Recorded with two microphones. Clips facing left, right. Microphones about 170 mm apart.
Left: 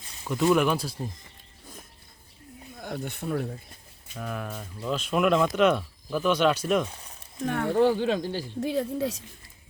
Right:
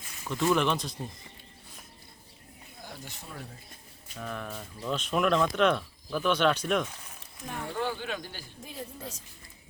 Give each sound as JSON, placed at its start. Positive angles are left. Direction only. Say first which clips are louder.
{"t": 0.3, "sound": "speech", "louder": "left 4 dB", "side_deg": 10}
{"t": 2.8, "sound": "speech", "louder": "left 12 dB", "side_deg": 60}
{"t": 4.2, "sound": "speech", "louder": "left 3 dB", "side_deg": 5}
{"t": 7.4, "sound": "speech", "louder": "left 10 dB", "side_deg": 70}
{"t": 7.8, "sound": "speech", "louder": "left 11 dB", "side_deg": 30}
{"t": 8.6, "sound": "speech", "louder": "left 14 dB", "side_deg": 80}